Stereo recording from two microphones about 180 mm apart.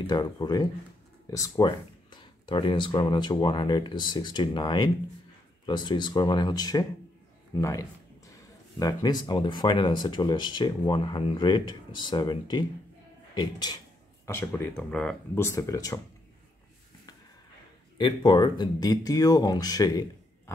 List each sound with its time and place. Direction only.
0.0 s a man's voice: 20° left (ahead or behind)
8.7 s speech: 20° left (ahead or behind)
14.2 s speech: 15° left (ahead or behind)
15.4 s speech: 15° left (ahead or behind)
17.9 s speech: 25° left (ahead or behind)